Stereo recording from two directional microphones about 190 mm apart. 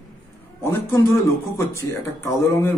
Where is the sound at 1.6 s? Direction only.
15° left (ahead or behind).